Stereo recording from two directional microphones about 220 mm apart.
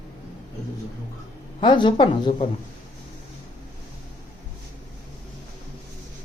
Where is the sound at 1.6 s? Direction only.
20° left (ahead or behind).